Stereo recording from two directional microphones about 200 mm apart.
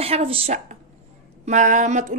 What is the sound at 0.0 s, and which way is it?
A woman's voice, 30° right (ahead or behind).